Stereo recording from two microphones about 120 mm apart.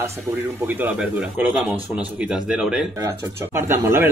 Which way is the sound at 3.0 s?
25° right (ahead or behind).